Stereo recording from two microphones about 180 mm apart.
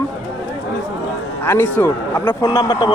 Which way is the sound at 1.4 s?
10° left (ahead or behind).